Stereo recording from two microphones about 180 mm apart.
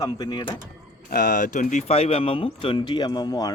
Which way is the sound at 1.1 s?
50° left (ahead or behind).